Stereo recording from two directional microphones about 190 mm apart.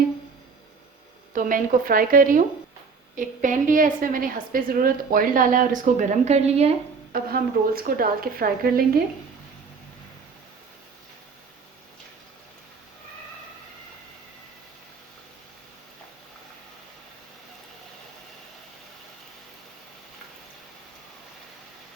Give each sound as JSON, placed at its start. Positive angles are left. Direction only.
{"t": 1.3, "sound": "a woman's voice", "side_deg": -45}
{"t": 7.1, "sound": "a woman's voice", "side_deg": -50}